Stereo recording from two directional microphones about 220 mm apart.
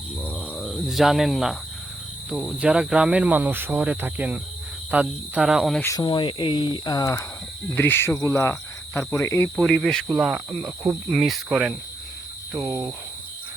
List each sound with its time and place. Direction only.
0.3 s cricket: centre (ahead or behind)
2.3 s speech: 5° right (ahead or behind)
5.8 s speech: 15° left (ahead or behind); by 12.9 s 5° right (ahead or behind)